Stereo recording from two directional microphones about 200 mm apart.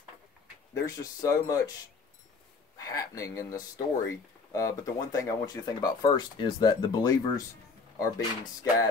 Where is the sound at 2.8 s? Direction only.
15° left (ahead or behind).